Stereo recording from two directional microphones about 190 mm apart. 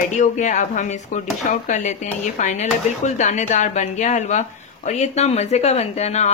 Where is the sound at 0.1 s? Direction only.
40° left (ahead or behind).